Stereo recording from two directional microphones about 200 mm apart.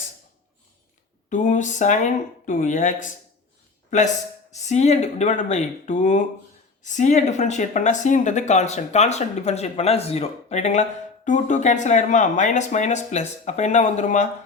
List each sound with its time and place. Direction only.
1.3 s a man's voice: 40° left (ahead or behind)